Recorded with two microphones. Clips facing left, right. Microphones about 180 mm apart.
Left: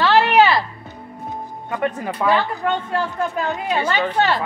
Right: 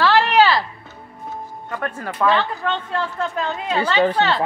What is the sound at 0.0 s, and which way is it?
Music, 10° left (ahead or behind).